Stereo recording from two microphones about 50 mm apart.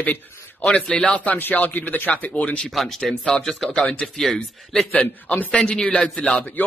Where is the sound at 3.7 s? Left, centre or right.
Left.